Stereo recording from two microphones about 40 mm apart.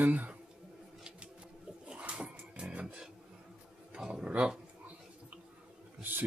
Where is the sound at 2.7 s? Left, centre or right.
Right.